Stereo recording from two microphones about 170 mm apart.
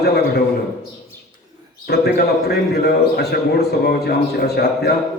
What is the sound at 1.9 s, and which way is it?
A man's voice, 65° left (ahead or behind).